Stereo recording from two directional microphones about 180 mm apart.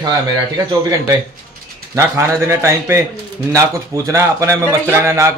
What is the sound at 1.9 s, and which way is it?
Speech, 15° right (ahead or behind).